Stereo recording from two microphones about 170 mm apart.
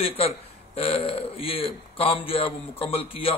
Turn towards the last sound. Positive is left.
turn(degrees=35)  # may be behind; listen again after turning